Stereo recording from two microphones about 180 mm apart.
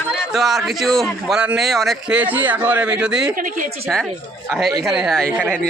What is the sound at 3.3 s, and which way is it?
Speech, 50° right (ahead or behind).